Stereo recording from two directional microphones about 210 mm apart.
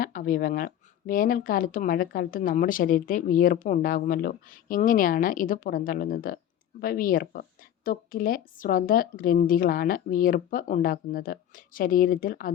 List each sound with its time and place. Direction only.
0.0 s a woman's voice: 40° left (ahead or behind)